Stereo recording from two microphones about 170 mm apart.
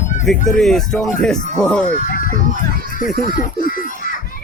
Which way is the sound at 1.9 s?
50° left (ahead or behind).